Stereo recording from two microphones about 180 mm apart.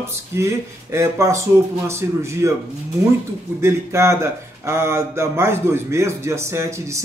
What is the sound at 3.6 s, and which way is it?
Speech, 15° right (ahead or behind).